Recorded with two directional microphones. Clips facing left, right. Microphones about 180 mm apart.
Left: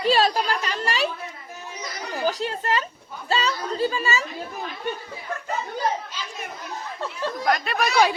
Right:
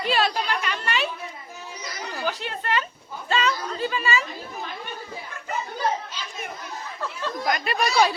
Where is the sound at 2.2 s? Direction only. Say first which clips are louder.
Left 5 dB; 40° left (ahead or behind).